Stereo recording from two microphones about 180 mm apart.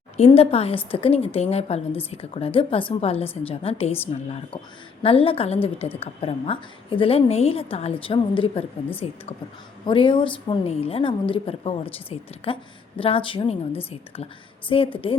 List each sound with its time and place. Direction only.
0.3 s a woman's voice: 35° left (ahead or behind)